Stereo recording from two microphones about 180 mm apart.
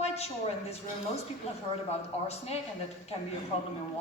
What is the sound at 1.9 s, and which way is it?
Speech, 35° left (ahead or behind).